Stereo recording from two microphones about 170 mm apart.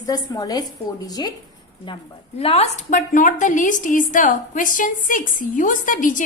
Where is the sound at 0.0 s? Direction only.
20° left (ahead or behind).